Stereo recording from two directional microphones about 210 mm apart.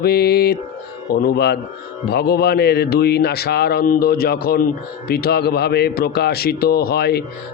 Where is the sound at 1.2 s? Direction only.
50° left (ahead or behind).